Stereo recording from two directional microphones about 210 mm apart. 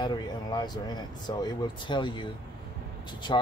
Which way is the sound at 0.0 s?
20° left (ahead or behind).